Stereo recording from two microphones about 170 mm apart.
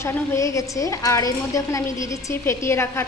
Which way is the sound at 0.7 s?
20° left (ahead or behind).